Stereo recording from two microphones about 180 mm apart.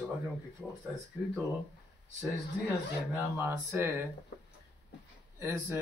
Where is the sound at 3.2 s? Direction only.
10° right (ahead or behind).